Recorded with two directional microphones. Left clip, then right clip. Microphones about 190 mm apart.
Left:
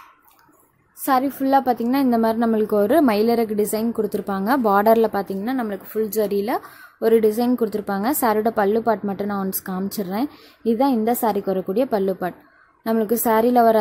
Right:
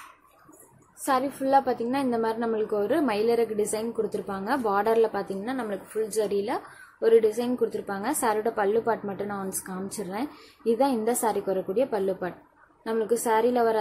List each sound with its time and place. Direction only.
1.0 s a woman's voice: 45° left (ahead or behind)